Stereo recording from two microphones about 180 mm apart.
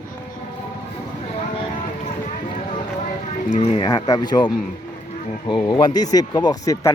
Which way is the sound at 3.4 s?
40° left (ahead or behind).